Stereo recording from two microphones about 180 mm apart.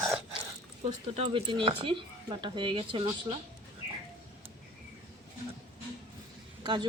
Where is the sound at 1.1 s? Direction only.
30° right (ahead or behind).